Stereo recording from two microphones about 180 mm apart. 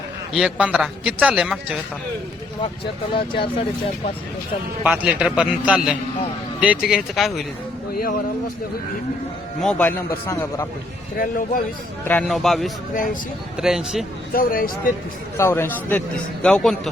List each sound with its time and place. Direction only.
0.3 s a man's voice: 5° right (ahead or behind)
3.2 s speech: 30° left (ahead or behind)
4.8 s a man's voice: 5° right (ahead or behind)
7.9 s speech: 55° left (ahead or behind)
9.6 s a man's voice: 5° left (ahead or behind)
11.2 s speech: 50° left (ahead or behind)
12.0 s a man's voice: 5° left (ahead or behind)
14.3 s speech: 50° left (ahead or behind)
15.4 s a man's voice: 15° left (ahead or behind)